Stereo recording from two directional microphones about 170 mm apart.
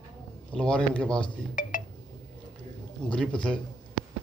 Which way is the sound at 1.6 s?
50° left (ahead or behind).